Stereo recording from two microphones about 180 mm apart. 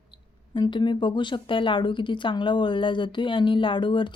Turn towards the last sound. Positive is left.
turn(degrees=25)  # may be behind; listen again after turning